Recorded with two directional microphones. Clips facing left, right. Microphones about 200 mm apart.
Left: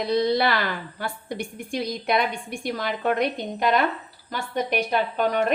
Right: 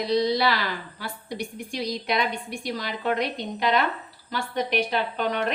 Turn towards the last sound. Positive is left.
turn(degrees=45)  # may be behind; listen again after turning